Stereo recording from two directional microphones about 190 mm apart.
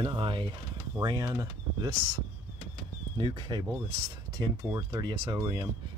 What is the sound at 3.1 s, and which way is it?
Speech, 25° right (ahead or behind).